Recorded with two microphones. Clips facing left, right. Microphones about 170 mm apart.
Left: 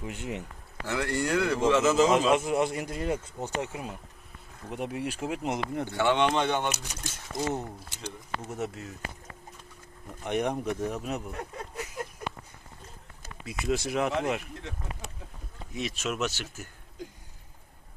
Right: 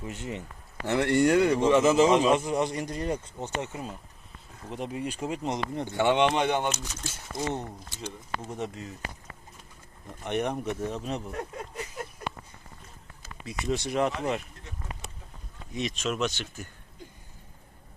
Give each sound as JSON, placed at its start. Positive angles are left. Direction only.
{"t": 0.0, "sound": "speech", "side_deg": 5}
{"t": 0.9, "sound": "speech", "side_deg": -20}
{"t": 2.2, "sound": "speech", "side_deg": 5}
{"t": 5.8, "sound": "speech", "side_deg": -15}
{"t": 6.7, "sound": "speech", "side_deg": 15}
{"t": 10.2, "sound": "speech", "side_deg": 10}
{"t": 13.4, "sound": "speech", "side_deg": 5}
{"t": 15.7, "sound": "speech", "side_deg": 5}